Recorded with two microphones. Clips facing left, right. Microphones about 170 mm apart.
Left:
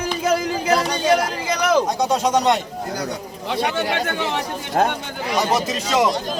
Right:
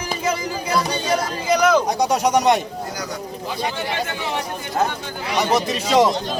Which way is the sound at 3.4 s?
70° left (ahead or behind).